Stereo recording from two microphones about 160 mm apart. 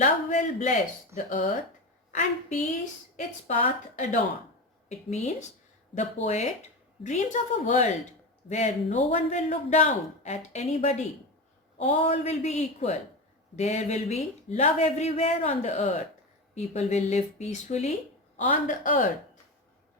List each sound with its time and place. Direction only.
0.0 s a man's voice: 45° left (ahead or behind)
18.3 s a woman's voice: 55° left (ahead or behind)